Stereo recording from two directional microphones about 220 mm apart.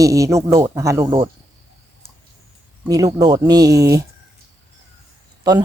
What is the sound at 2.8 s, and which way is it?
Speech, 15° right (ahead or behind).